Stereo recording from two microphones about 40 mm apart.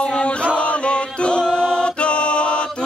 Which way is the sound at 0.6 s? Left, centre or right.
Left.